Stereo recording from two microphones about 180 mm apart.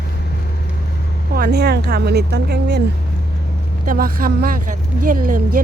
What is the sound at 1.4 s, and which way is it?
Speech, 60° right (ahead or behind).